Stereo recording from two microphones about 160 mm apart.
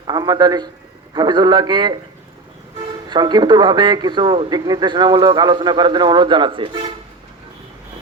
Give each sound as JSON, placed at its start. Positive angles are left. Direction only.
{"t": 0.1, "sound": "speech", "side_deg": -25}
{"t": 3.1, "sound": "speech", "side_deg": -25}